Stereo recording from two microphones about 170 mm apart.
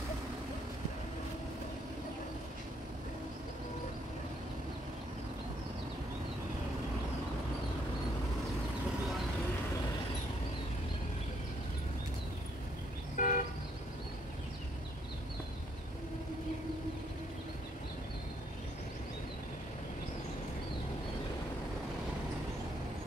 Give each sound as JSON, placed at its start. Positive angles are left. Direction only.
{"t": 13.1, "sound": "toot", "side_deg": 50}